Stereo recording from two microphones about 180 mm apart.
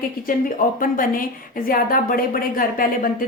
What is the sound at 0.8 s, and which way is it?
A woman's voice, 50° left (ahead or behind).